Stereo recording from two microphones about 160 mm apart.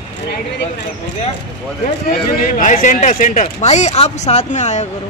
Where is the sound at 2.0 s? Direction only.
50° left (ahead or behind).